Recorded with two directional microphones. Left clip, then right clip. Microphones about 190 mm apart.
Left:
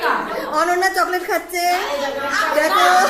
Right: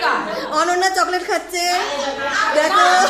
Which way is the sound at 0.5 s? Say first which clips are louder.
Even; centre (ahead or behind).